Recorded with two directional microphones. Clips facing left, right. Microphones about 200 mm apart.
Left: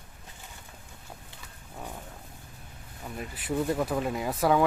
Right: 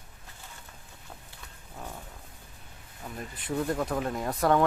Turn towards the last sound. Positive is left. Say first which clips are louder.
# even
turn(degrees=5)  # may be behind; listen again after turning